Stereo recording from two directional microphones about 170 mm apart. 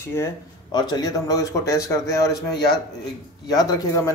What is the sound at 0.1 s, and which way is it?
Speech, 20° left (ahead or behind).